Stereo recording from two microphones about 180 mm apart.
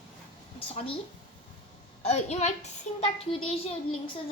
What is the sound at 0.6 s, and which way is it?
Speech, 30° left (ahead or behind).